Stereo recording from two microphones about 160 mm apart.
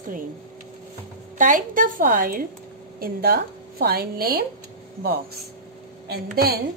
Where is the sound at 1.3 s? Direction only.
55° right (ahead or behind); by 4.5 s 70° right (ahead or behind).